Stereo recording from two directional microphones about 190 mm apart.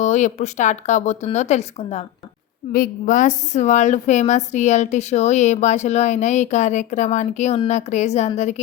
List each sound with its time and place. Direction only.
0.0 s a woman's voice: 40° left (ahead or behind)